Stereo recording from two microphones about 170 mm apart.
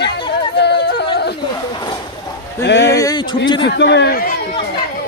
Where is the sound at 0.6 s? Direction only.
80° left.